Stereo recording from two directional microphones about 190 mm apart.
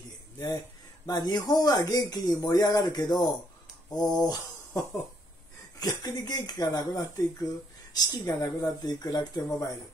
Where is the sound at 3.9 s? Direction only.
20° left (ahead or behind).